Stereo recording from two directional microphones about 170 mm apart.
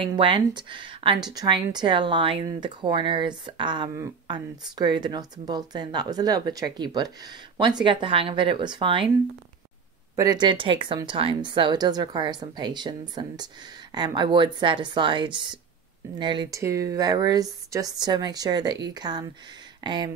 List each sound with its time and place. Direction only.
0.0 s speech: 30° right (ahead or behind)
10.1 s speech: 20° right (ahead or behind)